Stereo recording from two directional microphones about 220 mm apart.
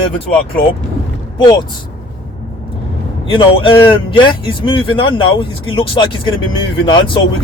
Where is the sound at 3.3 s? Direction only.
25° left (ahead or behind).